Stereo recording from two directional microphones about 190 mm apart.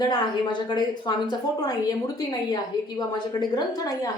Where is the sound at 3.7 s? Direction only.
20° left (ahead or behind).